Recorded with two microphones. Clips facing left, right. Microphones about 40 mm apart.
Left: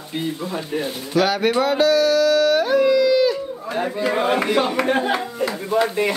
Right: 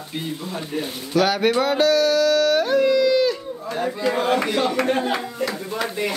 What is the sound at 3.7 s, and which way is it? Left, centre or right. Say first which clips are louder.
Speech: left 1 dB; centre.